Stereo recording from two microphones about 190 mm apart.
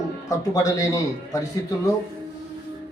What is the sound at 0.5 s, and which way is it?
A man's voice, 15° left (ahead or behind).